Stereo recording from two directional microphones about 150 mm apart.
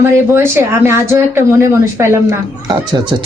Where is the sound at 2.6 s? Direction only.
30° right (ahead or behind).